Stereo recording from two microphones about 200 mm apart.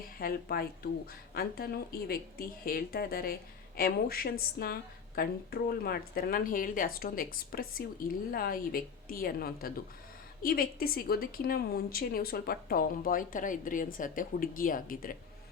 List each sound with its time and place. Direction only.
0.2 s a woman's voice: 50° left (ahead or behind)